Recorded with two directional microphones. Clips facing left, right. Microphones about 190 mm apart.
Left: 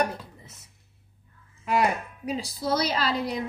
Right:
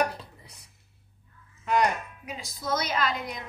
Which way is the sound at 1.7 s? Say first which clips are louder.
Left 1 dB; 5° left (ahead or behind).